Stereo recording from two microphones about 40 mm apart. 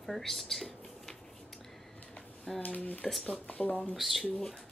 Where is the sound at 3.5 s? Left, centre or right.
Left.